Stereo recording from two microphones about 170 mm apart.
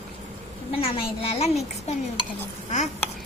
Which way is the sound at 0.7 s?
35° left (ahead or behind).